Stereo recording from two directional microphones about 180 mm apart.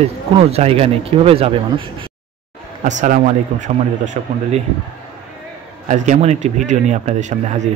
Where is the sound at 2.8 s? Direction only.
45° right (ahead or behind).